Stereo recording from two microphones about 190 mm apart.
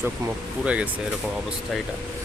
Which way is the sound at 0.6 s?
5° right (ahead or behind).